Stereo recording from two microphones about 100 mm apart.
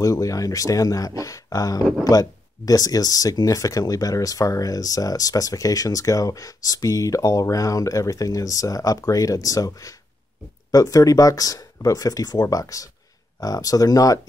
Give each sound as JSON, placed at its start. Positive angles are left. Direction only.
{"t": 0.0, "sound": "speech", "side_deg": 35}